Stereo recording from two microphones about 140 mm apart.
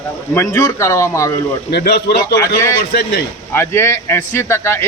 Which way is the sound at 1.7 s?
90° left.